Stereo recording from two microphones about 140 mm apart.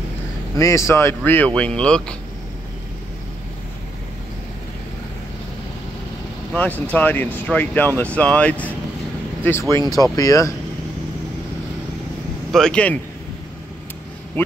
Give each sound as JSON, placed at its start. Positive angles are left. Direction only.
{"t": 0.6, "sound": "speech", "side_deg": 20}
{"t": 6.5, "sound": "speech", "side_deg": 10}
{"t": 12.5, "sound": "speech", "side_deg": 5}